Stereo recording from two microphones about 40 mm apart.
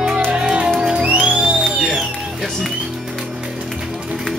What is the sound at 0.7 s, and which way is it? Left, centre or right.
Music, centre.